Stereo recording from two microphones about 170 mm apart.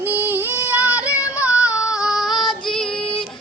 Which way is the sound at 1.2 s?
20° left (ahead or behind).